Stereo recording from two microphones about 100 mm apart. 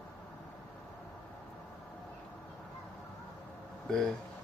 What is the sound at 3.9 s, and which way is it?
Speech, 5° left (ahead or behind).